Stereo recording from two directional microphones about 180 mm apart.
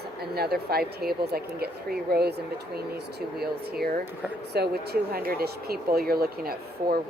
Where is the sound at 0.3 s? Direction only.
60° right (ahead or behind).